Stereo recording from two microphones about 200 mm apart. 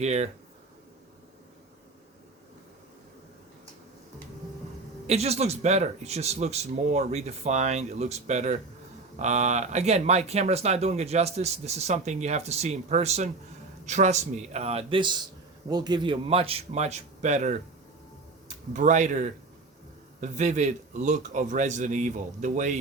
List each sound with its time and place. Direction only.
0.0 s speech: 35° right (ahead or behind)
5.0 s speech: 30° right (ahead or behind)